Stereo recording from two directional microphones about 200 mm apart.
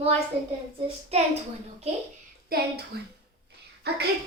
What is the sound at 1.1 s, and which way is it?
Speech, 30° right (ahead or behind).